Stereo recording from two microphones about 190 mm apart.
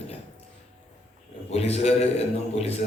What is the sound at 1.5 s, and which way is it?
Speech, 35° left (ahead or behind).